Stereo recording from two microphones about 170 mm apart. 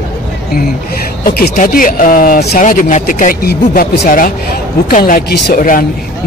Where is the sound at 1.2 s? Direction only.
60° left (ahead or behind).